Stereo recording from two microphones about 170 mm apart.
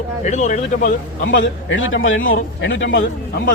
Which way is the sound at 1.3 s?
90° left.